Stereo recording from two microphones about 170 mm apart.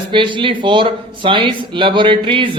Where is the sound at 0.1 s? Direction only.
30° right (ahead or behind).